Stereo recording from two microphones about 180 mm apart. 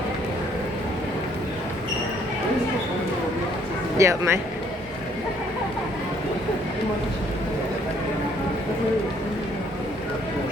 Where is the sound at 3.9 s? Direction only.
15° right (ahead or behind).